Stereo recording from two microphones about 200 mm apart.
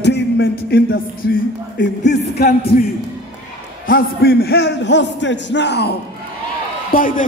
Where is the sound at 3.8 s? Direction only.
50° left (ahead or behind).